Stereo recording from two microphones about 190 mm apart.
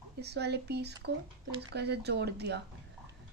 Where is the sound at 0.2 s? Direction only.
60° right (ahead or behind).